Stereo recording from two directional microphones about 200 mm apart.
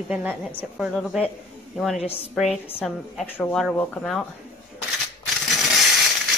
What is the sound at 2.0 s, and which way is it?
Speech, 30° left (ahead or behind).